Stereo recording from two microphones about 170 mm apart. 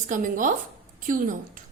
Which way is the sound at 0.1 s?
50° right (ahead or behind).